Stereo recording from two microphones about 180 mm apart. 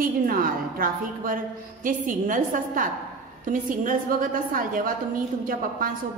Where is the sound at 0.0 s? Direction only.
50° right (ahead or behind).